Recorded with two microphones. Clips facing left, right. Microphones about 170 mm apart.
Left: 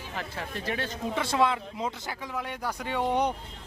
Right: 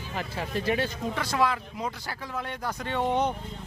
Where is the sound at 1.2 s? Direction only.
25° left (ahead or behind).